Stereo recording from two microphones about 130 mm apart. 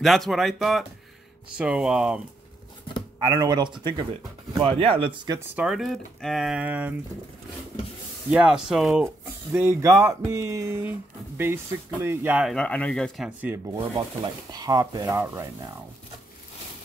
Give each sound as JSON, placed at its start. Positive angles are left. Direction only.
{"t": 0.0, "sound": "speech", "side_deg": 0}
{"t": 3.2, "sound": "speech", "side_deg": -30}
{"t": 5.6, "sound": "speech", "side_deg": 0}
{"t": 8.3, "sound": "speech", "side_deg": -5}
{"t": 9.5, "sound": "speech", "side_deg": -20}
{"t": 12.4, "sound": "speech", "side_deg": 5}
{"t": 13.4, "sound": "speech", "side_deg": -15}
{"t": 13.9, "sound": "speech", "side_deg": -35}